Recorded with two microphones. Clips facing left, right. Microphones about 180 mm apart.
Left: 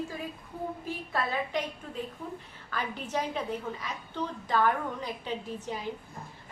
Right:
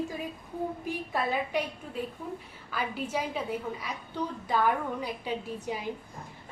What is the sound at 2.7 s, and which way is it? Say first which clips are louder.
A woman's voice: right 2 dB; 10° right (ahead or behind).